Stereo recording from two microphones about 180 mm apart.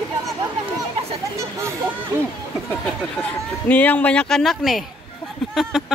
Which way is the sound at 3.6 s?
10° left (ahead or behind).